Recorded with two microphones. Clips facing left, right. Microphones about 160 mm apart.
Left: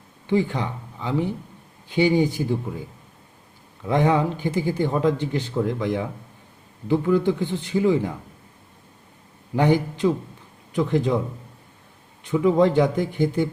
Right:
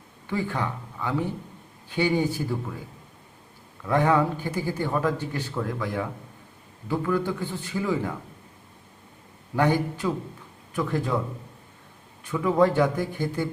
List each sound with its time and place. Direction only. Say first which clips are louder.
0.3 s speech: left 6 dB; 20° left (ahead or behind)
3.8 s speech: left 2 dB; 20° left (ahead or behind)
9.6 s speech: left 3 dB; 20° left (ahead or behind)
12.2 s speech: left 3 dB; 20° left (ahead or behind)